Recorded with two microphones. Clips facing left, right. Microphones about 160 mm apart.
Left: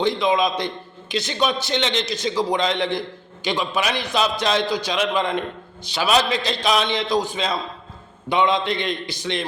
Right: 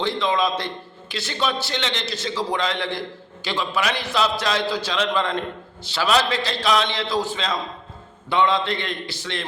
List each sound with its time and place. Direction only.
0.0 s a man's voice: 15° left (ahead or behind)